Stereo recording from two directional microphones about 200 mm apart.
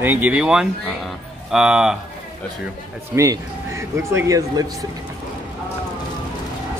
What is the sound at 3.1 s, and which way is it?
A man's voice, 15° right (ahead or behind).